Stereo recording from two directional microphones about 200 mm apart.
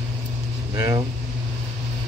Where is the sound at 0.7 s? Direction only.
15° right (ahead or behind).